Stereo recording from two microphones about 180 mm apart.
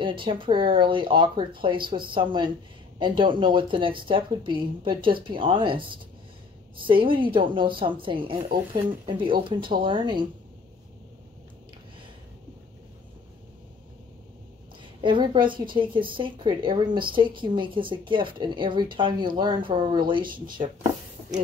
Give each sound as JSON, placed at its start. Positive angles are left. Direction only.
{"t": 0.0, "sound": "speech", "side_deg": -30}
{"t": 15.0, "sound": "speech", "side_deg": -25}